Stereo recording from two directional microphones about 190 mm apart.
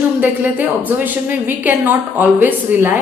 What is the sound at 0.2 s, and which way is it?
A woman's voice, 10° right (ahead or behind).